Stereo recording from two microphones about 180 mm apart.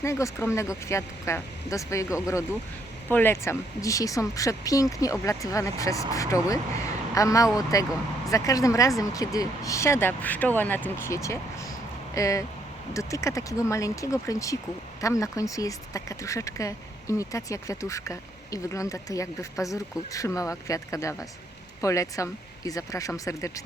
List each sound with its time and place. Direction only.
0.0 s speech: 15° left (ahead or behind)